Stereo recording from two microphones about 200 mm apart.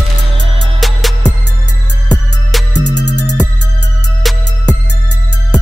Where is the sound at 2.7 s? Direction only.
60° left (ahead or behind).